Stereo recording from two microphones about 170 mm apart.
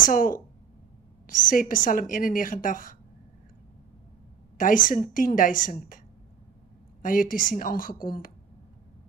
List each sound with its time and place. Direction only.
0.0 s a woman's voice: 55° left (ahead or behind)
4.6 s a woman's voice: 50° left (ahead or behind)
7.0 s a woman's voice: 55° left (ahead or behind)